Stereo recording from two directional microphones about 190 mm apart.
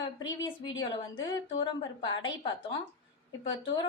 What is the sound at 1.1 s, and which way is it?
A woman's voice, 20° left (ahead or behind).